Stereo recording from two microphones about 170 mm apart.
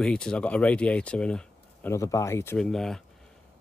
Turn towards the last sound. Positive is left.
turn(degrees=5)  # may be behind; listen again after turning